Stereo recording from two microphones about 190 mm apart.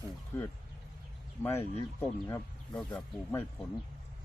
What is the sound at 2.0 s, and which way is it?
Speech, 10° left (ahead or behind).